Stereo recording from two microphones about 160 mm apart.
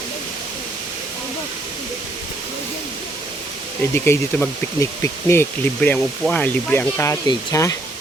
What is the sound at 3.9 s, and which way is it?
Speech, 15° left (ahead or behind).